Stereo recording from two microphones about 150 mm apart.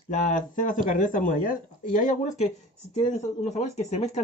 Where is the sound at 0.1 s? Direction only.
55° left (ahead or behind).